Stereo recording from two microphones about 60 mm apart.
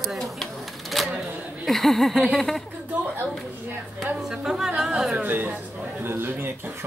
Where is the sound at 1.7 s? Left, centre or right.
Centre.